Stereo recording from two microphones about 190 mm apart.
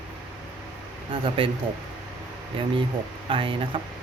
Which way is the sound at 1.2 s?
25° right (ahead or behind).